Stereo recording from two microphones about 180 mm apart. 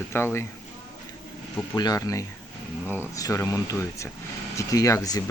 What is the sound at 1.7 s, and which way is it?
Speech, 20° left (ahead or behind).